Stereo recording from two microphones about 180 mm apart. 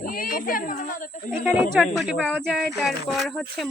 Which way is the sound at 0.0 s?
50° left (ahead or behind).